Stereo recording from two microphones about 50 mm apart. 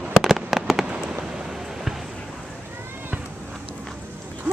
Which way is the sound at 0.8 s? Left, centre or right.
Right.